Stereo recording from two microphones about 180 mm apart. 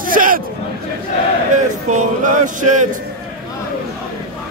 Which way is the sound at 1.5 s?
45° right (ahead or behind).